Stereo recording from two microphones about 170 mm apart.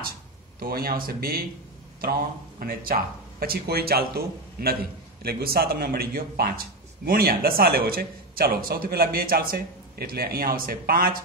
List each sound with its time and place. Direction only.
0.6 s speech: 60° right (ahead or behind)
2.6 s speech: 60° right (ahead or behind)